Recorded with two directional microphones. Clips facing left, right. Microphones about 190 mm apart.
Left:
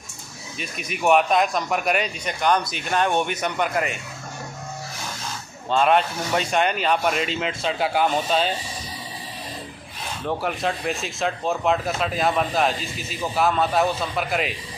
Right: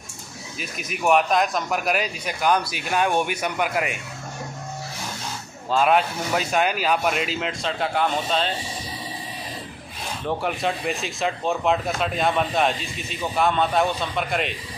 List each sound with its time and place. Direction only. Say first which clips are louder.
0.6 s speech: left 1 dB; centre (ahead or behind)
5.7 s speech: even; 5° right (ahead or behind)
10.2 s speech: even; centre (ahead or behind)